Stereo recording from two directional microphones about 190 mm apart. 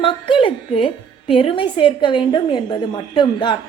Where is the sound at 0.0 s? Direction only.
25° left (ahead or behind).